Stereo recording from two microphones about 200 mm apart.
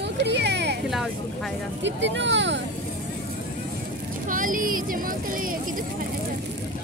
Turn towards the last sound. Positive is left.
turn(degrees=-45)  # may be behind; listen again after turning